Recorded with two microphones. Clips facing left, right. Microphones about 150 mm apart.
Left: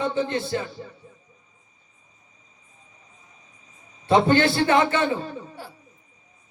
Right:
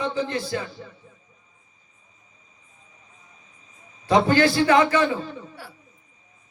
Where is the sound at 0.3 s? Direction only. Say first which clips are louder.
Left 1 dB; 25° left (ahead or behind).